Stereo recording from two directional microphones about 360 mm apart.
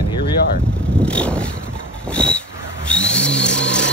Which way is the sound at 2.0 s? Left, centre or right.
Centre.